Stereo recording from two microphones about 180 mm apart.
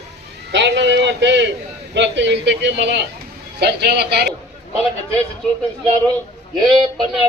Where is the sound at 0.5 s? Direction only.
80° right.